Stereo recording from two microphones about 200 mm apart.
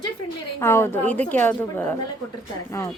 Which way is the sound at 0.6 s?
10° left (ahead or behind).